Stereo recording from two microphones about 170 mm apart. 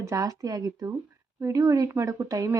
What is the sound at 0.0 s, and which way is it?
Speech, 20° right (ahead or behind).